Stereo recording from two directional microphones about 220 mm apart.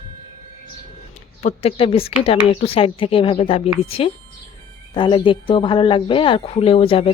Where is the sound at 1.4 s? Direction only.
30° left (ahead or behind).